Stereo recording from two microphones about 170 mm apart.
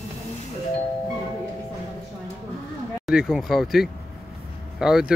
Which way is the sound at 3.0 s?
5° right (ahead or behind).